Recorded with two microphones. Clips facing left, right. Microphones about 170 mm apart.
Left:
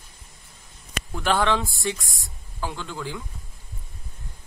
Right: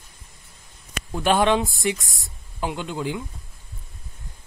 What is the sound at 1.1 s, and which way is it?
Speech, 20° right (ahead or behind).